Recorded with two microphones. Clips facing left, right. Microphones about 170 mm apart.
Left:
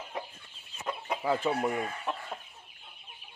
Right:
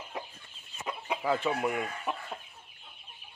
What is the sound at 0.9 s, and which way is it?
Chicken, 5° right (ahead or behind).